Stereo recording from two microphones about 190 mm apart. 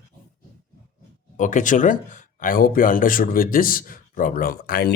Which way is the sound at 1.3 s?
40° left (ahead or behind).